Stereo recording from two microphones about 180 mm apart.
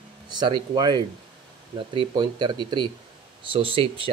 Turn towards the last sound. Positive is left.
turn(degrees=-30)  # may be behind; listen again after turning